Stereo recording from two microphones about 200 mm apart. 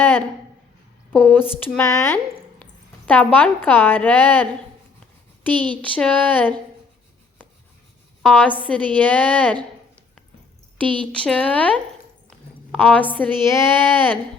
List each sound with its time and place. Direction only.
0.0 s a sound: 10° left (ahead or behind)
1.1 s a woman's voice: 10° left (ahead or behind)
5.8 s a woman's voice: 5° left (ahead or behind)
8.2 s a woman's voice: 5° left (ahead or behind)
10.8 s speech: 25° right (ahead or behind)
11.1 s a woman's voice: 5° left (ahead or behind)